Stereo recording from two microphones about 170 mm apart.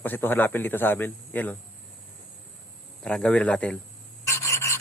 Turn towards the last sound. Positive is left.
turn(degrees=15)  # may be behind; listen again after turning